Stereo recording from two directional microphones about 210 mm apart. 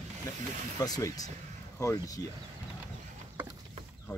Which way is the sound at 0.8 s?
15° left (ahead or behind).